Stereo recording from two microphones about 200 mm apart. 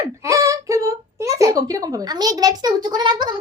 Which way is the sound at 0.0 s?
15° right (ahead or behind).